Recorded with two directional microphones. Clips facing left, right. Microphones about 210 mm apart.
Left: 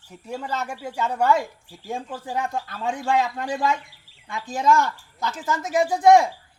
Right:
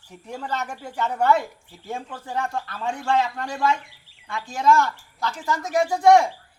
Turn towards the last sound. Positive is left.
turn(degrees=15)  # may be behind; listen again after turning